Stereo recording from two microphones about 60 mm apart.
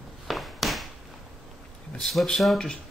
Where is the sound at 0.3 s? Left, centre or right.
Centre.